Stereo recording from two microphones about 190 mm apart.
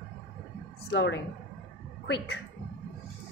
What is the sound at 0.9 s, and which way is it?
Speech, 70° left (ahead or behind).